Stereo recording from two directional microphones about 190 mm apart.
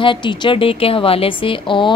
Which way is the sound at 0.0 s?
25° left (ahead or behind).